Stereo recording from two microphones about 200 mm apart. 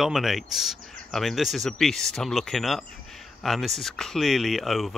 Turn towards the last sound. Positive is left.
turn(degrees=0)  # may be behind; listen again after turning